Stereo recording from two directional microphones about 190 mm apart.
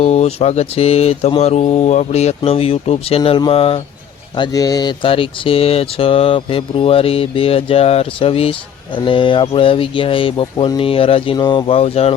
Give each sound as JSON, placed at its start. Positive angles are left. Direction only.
{"t": 0.0, "sound": "mantra", "side_deg": 35}
{"t": 4.4, "sound": "speech", "side_deg": 20}